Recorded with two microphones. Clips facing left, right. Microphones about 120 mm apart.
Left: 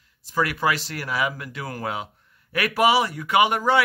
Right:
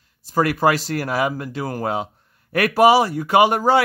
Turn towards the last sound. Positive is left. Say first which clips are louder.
# right 4 dB
turn(degrees=-35)  # may be behind; listen again after turning